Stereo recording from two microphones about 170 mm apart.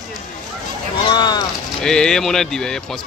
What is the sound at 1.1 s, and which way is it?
Speech, 25° left (ahead or behind).